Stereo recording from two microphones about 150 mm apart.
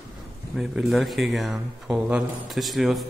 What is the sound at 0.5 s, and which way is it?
Speech, 5° right (ahead or behind).